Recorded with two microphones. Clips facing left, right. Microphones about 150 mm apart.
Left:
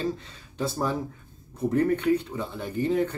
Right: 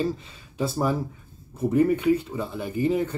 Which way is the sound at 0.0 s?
5° right (ahead or behind).